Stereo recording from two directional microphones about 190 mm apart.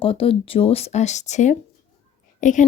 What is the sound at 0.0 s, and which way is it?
Speech, 30° left (ahead or behind).